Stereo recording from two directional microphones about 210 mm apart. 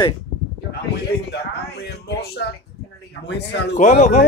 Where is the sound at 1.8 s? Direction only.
50° left (ahead or behind).